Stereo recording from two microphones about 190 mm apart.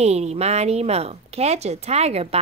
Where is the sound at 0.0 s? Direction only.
35° right (ahead or behind).